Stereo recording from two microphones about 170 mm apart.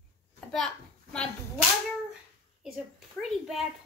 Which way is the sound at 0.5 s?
5° left (ahead or behind).